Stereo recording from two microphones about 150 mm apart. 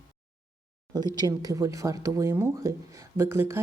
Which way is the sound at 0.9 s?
25° right (ahead or behind).